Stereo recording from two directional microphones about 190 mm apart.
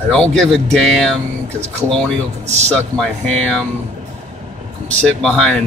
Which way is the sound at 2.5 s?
35° right (ahead or behind).